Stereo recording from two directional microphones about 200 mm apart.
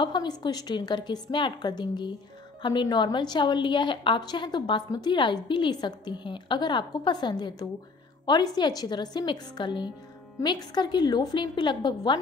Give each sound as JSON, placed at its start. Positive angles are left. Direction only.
{"t": 0.0, "sound": "a woman's voice", "side_deg": 20}